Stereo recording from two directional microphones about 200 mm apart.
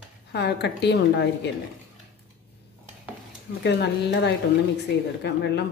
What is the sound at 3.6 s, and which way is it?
A woman's voice, 60° left (ahead or behind).